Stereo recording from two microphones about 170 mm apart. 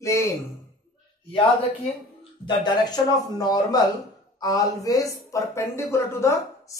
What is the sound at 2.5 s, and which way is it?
Speech, 25° left (ahead or behind).